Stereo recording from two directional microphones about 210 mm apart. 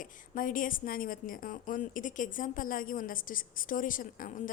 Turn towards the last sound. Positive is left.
turn(degrees=40)  # may be behind; listen again after turning